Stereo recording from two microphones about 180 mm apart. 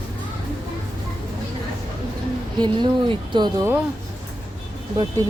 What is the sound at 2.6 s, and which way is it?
Speech, 25° right (ahead or behind).